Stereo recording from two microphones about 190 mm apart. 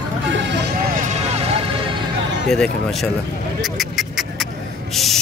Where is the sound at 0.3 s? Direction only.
65° right (ahead or behind).